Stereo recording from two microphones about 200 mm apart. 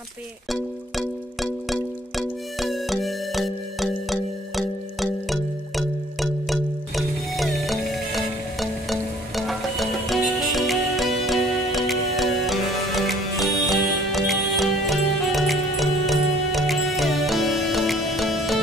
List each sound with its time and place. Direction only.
0.5 s music: centre (ahead or behind)